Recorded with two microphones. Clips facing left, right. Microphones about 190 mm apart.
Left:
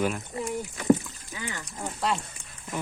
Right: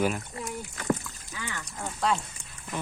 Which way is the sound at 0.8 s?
20° left (ahead or behind).